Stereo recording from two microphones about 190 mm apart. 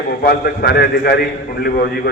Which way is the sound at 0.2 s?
55° left (ahead or behind).